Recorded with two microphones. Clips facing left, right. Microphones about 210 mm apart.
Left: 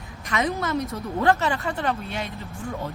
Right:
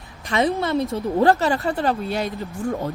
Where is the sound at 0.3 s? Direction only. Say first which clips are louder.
Right 5 dB; 30° right (ahead or behind).